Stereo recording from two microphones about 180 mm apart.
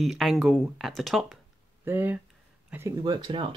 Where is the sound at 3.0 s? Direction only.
25° right (ahead or behind).